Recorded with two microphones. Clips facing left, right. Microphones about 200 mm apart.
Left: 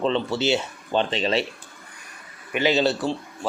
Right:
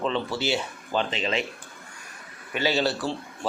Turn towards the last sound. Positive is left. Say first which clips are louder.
# left 4 dB
turn(degrees=20)  # may be behind; listen again after turning